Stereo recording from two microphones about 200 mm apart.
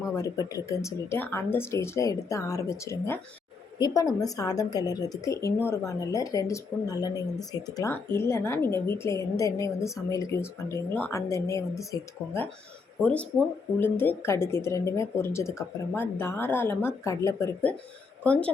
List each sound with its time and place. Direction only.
0.2 s a woman's voice: 15° left (ahead or behind)